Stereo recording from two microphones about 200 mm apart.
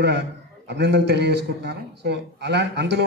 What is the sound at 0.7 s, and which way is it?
A man's voice, 60° right (ahead or behind).